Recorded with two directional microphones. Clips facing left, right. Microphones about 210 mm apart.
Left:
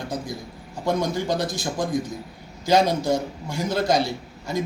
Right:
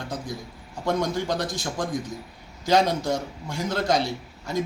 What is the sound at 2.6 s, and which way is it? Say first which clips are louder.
A man's voice: left 2 dB; 5° left (ahead or behind).